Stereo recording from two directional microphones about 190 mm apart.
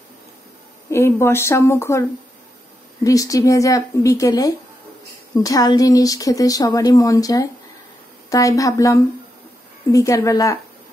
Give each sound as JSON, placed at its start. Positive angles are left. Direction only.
{"t": 0.8, "sound": "a woman's voice", "side_deg": 15}